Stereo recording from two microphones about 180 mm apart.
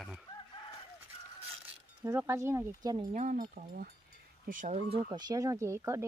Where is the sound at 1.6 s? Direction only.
15° right (ahead or behind).